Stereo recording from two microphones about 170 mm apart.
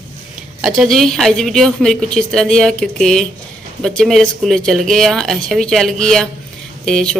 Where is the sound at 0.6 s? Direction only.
5° right (ahead or behind).